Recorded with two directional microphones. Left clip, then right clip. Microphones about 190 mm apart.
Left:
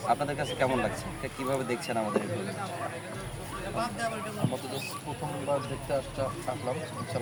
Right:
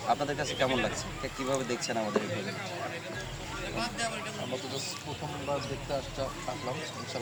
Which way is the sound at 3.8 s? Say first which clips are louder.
Left 2 dB; 45° left (ahead or behind).